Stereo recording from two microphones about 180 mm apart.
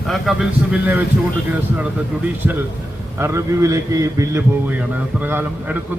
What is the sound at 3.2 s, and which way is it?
A man's voice, 15° right (ahead or behind).